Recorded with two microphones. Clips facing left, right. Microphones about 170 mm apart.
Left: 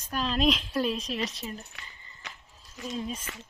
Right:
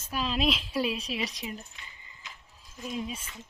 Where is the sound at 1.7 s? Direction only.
70° left (ahead or behind).